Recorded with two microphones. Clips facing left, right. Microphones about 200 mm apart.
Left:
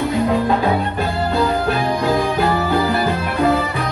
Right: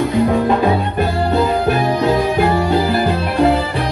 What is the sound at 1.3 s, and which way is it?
Music, 20° right (ahead or behind).